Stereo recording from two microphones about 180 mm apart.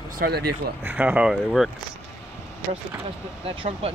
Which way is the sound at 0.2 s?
60° right (ahead or behind).